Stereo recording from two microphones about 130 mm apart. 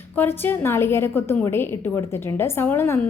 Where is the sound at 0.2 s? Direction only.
15° left (ahead or behind).